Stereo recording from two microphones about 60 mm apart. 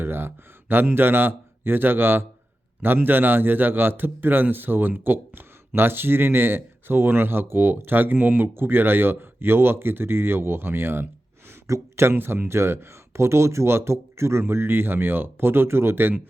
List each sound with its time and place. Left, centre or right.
0.0 s a man's voice: right
12.1 s speech: right